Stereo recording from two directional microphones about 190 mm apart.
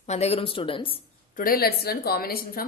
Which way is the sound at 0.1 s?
35° left (ahead or behind).